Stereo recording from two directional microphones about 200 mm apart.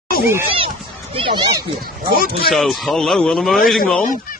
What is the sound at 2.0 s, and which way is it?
Speech, 50° left (ahead or behind).